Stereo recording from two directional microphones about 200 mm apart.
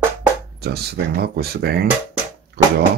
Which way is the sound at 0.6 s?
50° right (ahead or behind).